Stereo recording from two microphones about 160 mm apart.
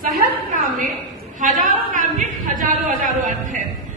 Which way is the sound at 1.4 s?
55° right (ahead or behind).